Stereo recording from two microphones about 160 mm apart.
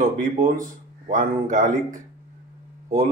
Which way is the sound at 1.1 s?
55° right (ahead or behind).